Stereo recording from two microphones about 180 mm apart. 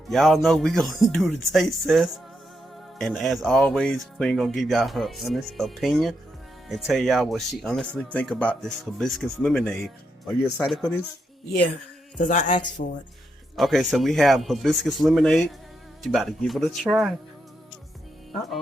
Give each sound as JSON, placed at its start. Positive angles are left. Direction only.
{"t": 0.1, "sound": "speech", "side_deg": 0}
{"t": 12.1, "sound": "speech", "side_deg": 45}
{"t": 13.6, "sound": "speech", "side_deg": 0}